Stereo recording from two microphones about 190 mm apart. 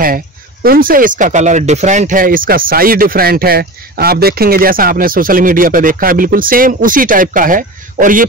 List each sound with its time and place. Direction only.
0.0 s speech: 50° right (ahead or behind)